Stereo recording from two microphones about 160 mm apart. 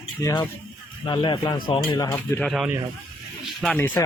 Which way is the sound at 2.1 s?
10° left (ahead or behind).